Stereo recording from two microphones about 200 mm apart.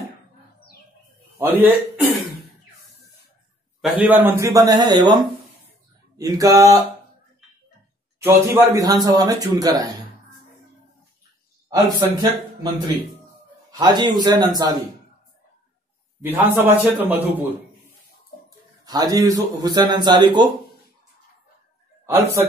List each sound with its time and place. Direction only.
1.4 s speech: 10° right (ahead or behind)
3.8 s speech: 10° right (ahead or behind)
8.3 s speech: 15° right (ahead or behind)
11.7 s speech: 20° right (ahead or behind)
13.7 s a man's voice: 20° right (ahead or behind)
16.2 s speech: 10° right (ahead or behind)
18.9 s a man's voice: 20° right (ahead or behind)
22.0 s a man's voice: 10° right (ahead or behind)